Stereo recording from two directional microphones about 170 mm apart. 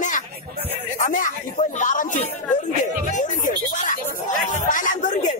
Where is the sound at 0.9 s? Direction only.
50° left (ahead or behind).